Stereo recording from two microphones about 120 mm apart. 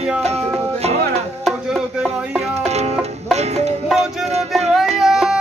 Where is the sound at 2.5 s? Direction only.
65° right (ahead or behind).